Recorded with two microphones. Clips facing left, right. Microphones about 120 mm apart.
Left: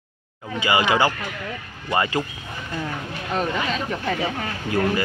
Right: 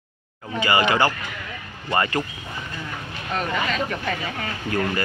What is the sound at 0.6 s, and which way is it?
Speech, 15° left (ahead or behind).